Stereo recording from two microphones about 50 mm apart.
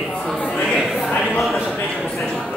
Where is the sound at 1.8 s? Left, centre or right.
Left.